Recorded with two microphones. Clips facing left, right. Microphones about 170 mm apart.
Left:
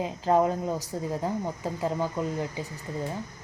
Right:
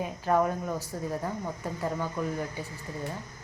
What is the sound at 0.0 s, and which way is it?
A woman's voice, 25° left (ahead or behind).